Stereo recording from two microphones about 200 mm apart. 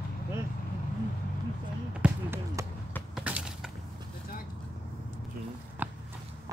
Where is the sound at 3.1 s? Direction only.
5° right (ahead or behind).